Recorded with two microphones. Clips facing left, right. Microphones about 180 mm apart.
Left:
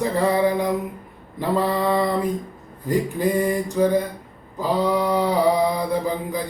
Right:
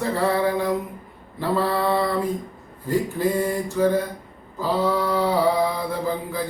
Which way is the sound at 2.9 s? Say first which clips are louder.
Left 1 dB; 15° left (ahead or behind).